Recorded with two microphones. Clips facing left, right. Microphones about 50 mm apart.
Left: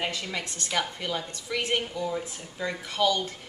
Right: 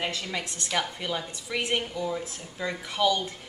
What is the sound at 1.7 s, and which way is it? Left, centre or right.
A woman's voice, centre.